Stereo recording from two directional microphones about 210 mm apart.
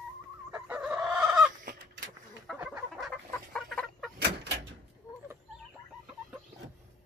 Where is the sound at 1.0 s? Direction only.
15° right (ahead or behind).